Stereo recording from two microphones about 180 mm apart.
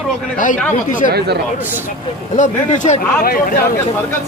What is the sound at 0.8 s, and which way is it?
Speech, 45° left (ahead or behind).